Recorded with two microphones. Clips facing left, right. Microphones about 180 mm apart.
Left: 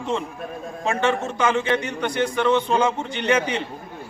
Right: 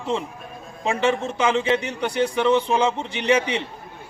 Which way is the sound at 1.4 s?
10° right (ahead or behind).